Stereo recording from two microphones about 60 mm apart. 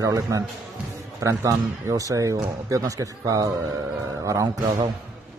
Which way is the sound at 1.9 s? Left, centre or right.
Right.